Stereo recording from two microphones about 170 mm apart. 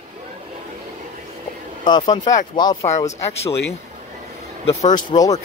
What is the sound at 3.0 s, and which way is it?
Speech, 15° left (ahead or behind).